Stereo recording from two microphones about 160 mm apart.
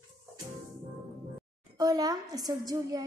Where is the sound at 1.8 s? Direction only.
25° right (ahead or behind).